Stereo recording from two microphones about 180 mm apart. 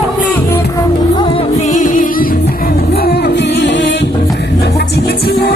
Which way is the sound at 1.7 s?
45° left (ahead or behind).